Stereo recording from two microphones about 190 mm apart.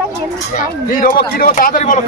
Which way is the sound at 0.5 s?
45° left (ahead or behind).